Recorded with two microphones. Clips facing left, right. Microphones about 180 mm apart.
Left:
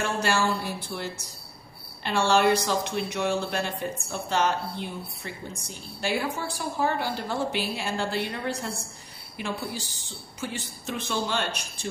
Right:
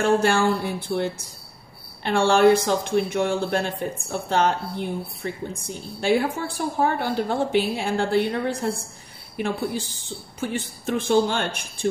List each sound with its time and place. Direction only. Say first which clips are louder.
0.0 s a woman's voice: right 6 dB; 55° right (ahead or behind)
10.4 s speech: right 6 dB; 55° right (ahead or behind)